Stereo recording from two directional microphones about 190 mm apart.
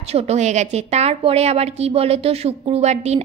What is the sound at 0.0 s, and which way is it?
A woman's voice, 30° right (ahead or behind).